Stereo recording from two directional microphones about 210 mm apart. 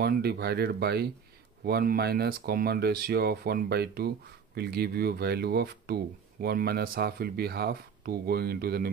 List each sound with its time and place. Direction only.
0.0 s speech: 50° right (ahead or behind)